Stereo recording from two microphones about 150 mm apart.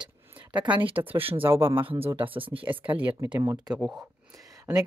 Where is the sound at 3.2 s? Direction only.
15° right (ahead or behind).